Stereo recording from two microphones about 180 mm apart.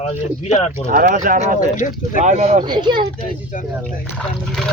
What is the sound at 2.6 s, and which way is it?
Speech, 25° right (ahead or behind).